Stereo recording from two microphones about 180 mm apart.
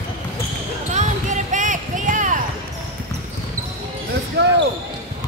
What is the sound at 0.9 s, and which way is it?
Basketball bounce, 45° right (ahead or behind).